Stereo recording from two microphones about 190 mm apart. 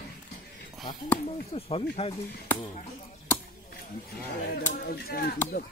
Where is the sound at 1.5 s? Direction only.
30° left (ahead or behind).